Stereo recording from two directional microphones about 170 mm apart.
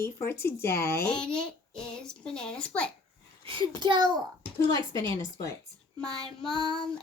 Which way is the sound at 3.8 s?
25° right (ahead or behind).